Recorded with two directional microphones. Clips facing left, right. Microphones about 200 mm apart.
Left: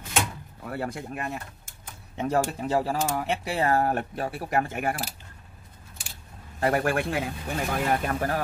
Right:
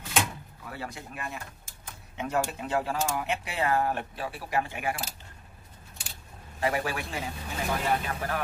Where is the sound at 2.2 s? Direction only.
35° left (ahead or behind).